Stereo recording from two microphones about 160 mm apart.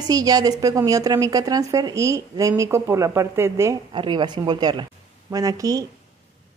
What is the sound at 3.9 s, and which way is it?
A woman's voice, 30° right (ahead or behind).